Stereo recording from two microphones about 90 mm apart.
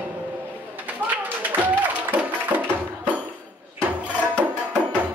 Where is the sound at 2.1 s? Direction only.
20° right (ahead or behind).